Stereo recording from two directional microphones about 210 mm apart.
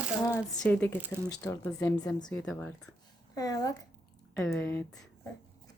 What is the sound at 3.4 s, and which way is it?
A child's voice, 15° left (ahead or behind).